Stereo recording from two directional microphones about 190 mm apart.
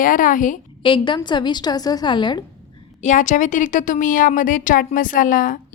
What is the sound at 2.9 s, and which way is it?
Speech, 40° left (ahead or behind).